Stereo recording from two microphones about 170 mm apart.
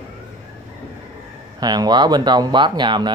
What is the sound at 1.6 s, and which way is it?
Speech, 25° right (ahead or behind).